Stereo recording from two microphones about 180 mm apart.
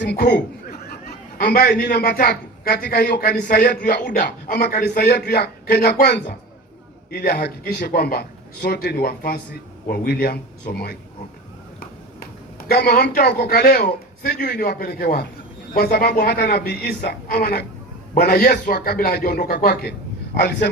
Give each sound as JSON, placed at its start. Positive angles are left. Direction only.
{"t": 0.0, "sound": "chuckle", "side_deg": 65}
{"t": 1.4, "sound": "a man's voice", "side_deg": 60}
{"t": 12.2, "sound": "a man's voice", "side_deg": 55}